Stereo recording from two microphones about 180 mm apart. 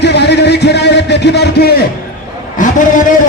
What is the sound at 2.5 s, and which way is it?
Speech, 45° left (ahead or behind).